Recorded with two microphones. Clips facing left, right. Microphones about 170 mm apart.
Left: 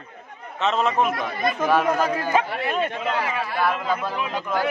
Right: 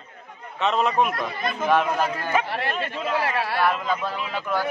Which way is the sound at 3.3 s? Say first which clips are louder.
Right 1 dB; 85° right.